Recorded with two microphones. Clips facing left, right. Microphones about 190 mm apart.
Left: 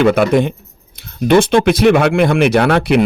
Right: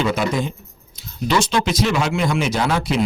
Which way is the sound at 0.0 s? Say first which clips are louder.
Left 9 dB; 60° left (ahead or behind).